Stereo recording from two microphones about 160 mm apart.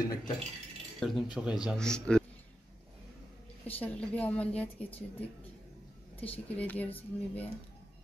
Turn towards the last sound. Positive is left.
turn(degrees=10)  # may be behind; listen again after turning